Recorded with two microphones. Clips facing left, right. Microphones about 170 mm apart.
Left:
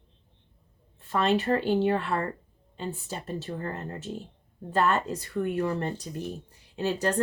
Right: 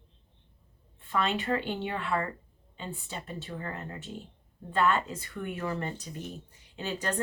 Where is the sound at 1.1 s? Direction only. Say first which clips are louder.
Left 5 dB; 40° left (ahead or behind).